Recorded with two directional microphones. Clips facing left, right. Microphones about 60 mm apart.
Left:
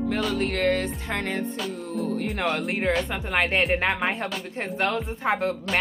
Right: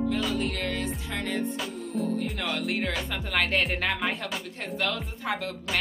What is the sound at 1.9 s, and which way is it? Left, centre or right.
Music, left.